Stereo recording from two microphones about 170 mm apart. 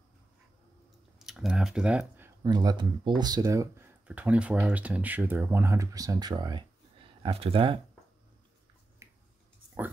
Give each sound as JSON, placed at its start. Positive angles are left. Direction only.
{"t": 1.2, "sound": "speech", "side_deg": 0}
{"t": 2.5, "sound": "speech", "side_deg": -25}
{"t": 9.0, "sound": "finger snapping", "side_deg": -15}